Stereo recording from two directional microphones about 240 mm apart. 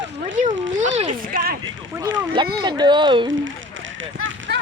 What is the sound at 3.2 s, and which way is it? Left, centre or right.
Run, right.